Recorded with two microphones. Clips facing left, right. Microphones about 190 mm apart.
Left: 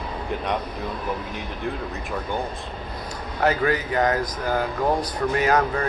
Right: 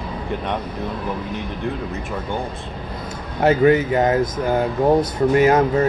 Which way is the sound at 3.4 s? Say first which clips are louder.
Right 7 dB; 25° right (ahead or behind).